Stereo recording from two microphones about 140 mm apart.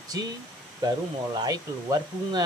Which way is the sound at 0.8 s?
30° right (ahead or behind).